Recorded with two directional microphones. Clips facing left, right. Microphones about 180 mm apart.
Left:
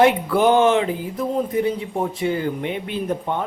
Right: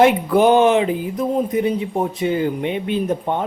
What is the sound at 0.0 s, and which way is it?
Speech, 15° right (ahead or behind).